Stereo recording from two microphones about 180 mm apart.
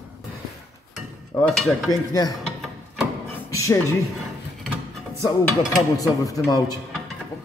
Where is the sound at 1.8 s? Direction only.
20° left (ahead or behind).